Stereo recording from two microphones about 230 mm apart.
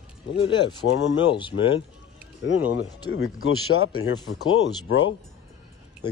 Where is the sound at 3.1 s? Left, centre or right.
Left.